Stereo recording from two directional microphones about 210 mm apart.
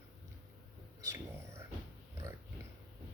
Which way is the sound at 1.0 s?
15° right (ahead or behind).